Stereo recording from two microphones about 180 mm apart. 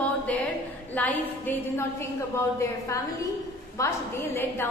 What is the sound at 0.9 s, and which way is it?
Speech, 10° left (ahead or behind).